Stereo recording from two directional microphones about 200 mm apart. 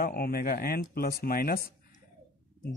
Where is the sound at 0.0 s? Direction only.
50° left (ahead or behind).